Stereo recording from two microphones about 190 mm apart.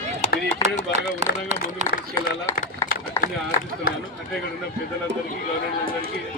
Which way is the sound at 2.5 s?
15° left (ahead or behind).